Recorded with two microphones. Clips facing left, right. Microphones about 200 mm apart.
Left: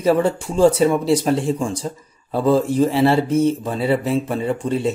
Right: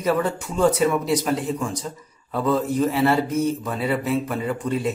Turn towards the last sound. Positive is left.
turn(degrees=30)  # may be behind; listen again after turning